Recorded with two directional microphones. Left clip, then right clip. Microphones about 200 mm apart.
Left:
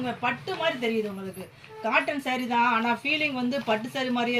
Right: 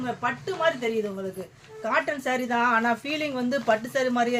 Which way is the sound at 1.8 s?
25° right (ahead or behind).